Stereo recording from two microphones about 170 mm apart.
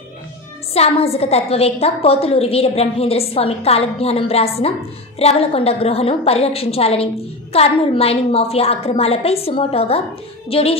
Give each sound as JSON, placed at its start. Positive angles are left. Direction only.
{"t": 0.7, "sound": "a woman's voice", "side_deg": 35}